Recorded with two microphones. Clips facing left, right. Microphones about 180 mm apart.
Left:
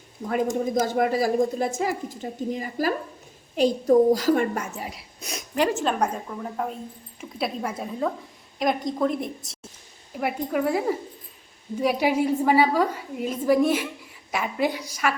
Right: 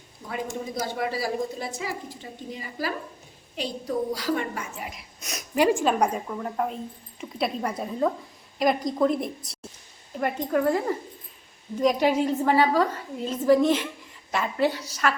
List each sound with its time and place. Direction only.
0.7 s a woman's voice: 50° left (ahead or behind)
4.9 s speech: 30° left (ahead or behind)
5.5 s a woman's voice: 10° right (ahead or behind); by 15.1 s 10° left (ahead or behind)